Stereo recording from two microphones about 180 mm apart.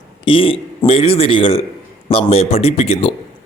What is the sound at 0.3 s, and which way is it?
A man's voice, 30° left (ahead or behind).